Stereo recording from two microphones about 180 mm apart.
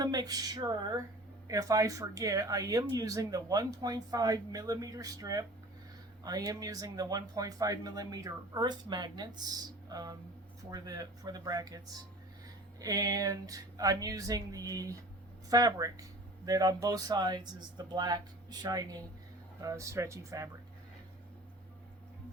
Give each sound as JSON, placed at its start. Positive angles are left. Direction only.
{"t": 0.0, "sound": "speech", "side_deg": -20}
{"t": 12.8, "sound": "speech", "side_deg": -20}